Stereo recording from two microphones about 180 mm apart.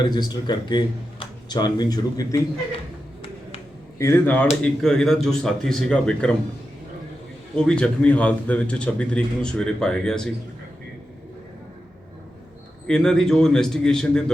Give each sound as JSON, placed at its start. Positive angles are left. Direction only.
{"t": 0.0, "sound": "speech", "side_deg": 25}
{"t": 3.9, "sound": "speech", "side_deg": 15}
{"t": 7.5, "sound": "speech", "side_deg": 5}
{"t": 12.9, "sound": "speech", "side_deg": 5}